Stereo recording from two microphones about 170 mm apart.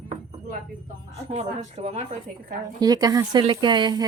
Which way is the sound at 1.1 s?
40° right (ahead or behind).